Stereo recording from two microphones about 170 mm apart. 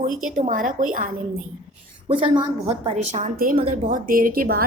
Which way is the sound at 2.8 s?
40° right (ahead or behind).